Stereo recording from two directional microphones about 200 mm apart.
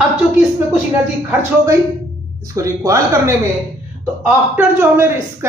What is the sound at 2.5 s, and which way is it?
Speech, 15° right (ahead or behind).